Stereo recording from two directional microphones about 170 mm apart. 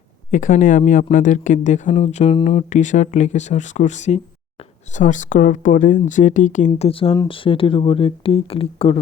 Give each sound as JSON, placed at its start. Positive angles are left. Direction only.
{"t": 0.3, "sound": "speech", "side_deg": 50}
{"t": 6.7, "sound": "speech", "side_deg": 35}